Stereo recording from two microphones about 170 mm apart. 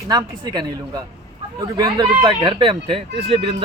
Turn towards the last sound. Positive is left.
turn(degrees=-35)  # may be behind; listen again after turning